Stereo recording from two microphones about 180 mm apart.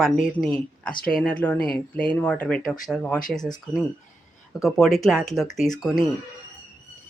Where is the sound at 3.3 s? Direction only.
20° left (ahead or behind).